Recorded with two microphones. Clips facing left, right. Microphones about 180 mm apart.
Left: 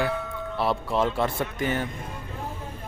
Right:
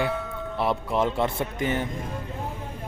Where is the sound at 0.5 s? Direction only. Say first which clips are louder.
Even; 20° right (ahead or behind).